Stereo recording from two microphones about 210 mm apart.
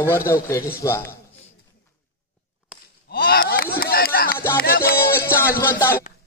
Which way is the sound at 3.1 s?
45° left (ahead or behind).